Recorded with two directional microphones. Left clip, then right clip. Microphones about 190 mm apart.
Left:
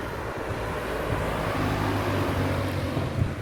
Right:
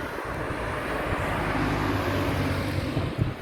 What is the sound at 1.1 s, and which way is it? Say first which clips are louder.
Vehicle: right 1 dB; 60° left (ahead or behind).